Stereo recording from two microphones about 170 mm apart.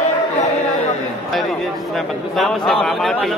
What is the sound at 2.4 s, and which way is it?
Speech, centre (ahead or behind).